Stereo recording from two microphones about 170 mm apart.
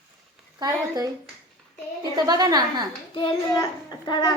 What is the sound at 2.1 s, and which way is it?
Speech, 25° right (ahead or behind).